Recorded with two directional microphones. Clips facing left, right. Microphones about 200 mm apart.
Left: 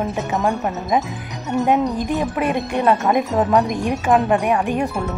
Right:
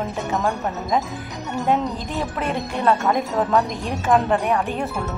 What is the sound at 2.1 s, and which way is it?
A woman's voice, 15° left (ahead or behind).